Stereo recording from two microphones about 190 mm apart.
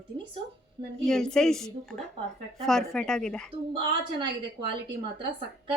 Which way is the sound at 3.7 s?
25° right (ahead or behind).